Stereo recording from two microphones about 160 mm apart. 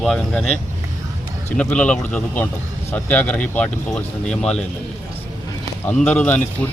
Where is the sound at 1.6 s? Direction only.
5° left (ahead or behind).